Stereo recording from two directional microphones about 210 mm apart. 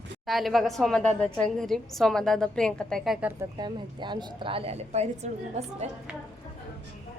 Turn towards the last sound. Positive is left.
turn(degrees=-30)  # may be behind; listen again after turning